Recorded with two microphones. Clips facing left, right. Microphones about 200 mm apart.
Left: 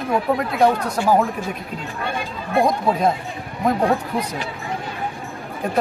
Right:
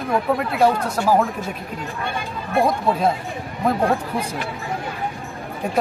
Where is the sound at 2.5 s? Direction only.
5° right (ahead or behind).